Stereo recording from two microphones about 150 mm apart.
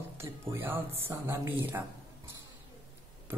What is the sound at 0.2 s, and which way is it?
Speech, 15° right (ahead or behind).